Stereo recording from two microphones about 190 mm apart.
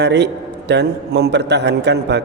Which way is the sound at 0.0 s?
65° right (ahead or behind).